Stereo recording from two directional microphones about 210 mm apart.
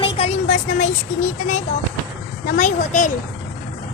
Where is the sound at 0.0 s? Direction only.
30° left (ahead or behind).